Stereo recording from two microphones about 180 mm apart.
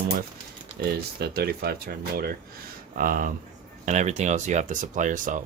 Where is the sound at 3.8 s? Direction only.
40° right (ahead or behind).